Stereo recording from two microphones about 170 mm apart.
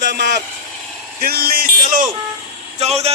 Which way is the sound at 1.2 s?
60° right (ahead or behind).